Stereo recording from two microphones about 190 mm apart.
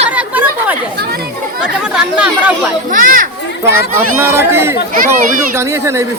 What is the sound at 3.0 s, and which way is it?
Speech, 45° right (ahead or behind).